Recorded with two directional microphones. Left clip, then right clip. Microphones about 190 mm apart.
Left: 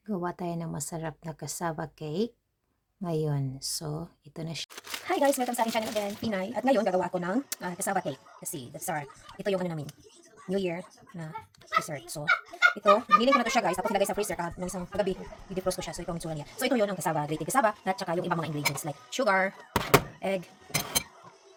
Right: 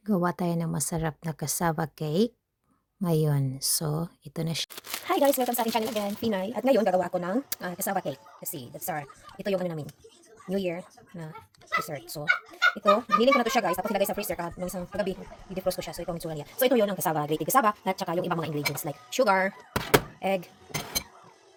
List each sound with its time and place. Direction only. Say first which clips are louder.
0.0 s speech: right 6 dB; 20° right (ahead or behind)
4.7 s speech: even; 35° right (ahead or behind)
5.2 s speech: right 1 dB; 25° right (ahead or behind)